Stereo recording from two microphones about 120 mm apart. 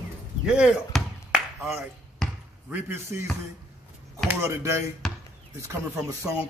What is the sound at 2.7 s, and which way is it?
Speech, 20° right (ahead or behind).